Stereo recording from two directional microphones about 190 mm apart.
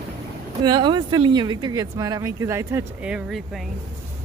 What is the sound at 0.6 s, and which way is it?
Speech, 25° right (ahead or behind).